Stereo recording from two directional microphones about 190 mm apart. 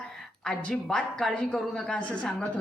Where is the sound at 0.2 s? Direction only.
5° left (ahead or behind).